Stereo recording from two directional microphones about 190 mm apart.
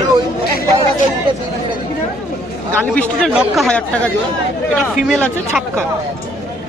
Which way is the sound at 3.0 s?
5° left (ahead or behind).